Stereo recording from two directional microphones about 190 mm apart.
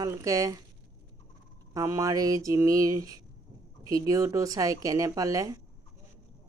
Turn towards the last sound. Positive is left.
turn(degrees=-20)  # may be behind; listen again after turning